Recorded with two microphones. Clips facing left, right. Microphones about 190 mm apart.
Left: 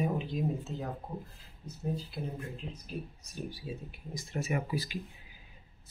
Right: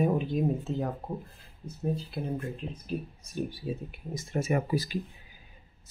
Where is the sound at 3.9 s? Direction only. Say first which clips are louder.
Right 5 dB; 50° right (ahead or behind).